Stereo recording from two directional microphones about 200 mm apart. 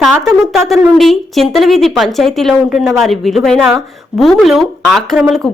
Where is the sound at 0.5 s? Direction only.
Centre (ahead or behind).